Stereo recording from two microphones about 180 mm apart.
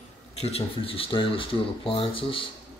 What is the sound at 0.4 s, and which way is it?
Speech, 35° left (ahead or behind).